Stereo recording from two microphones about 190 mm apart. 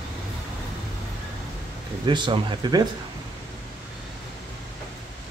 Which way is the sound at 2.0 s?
25° right (ahead or behind).